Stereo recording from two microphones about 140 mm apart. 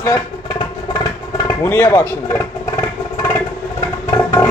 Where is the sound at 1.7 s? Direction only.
20° left (ahead or behind).